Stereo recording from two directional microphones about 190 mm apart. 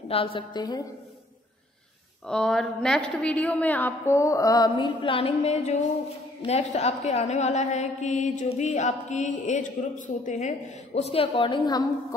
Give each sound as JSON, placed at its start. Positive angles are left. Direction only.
{"t": 0.1, "sound": "a woman's voice", "side_deg": 30}
{"t": 2.2, "sound": "a woman's voice", "side_deg": 5}